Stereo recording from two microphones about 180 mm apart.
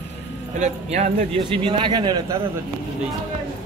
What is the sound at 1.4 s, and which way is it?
Speech, 30° right (ahead or behind).